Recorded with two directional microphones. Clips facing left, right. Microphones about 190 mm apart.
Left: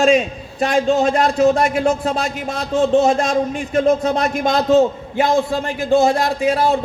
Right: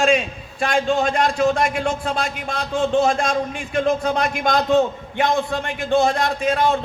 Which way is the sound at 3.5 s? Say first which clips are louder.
Left 5 dB; 40° left (ahead or behind).